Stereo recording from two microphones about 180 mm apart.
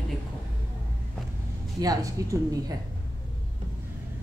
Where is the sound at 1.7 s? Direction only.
20° right (ahead or behind).